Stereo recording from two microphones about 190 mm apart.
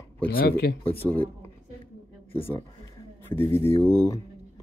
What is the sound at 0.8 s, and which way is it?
Speech, 10° left (ahead or behind).